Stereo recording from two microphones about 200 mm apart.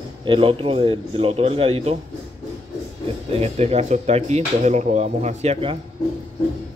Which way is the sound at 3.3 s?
30° right (ahead or behind).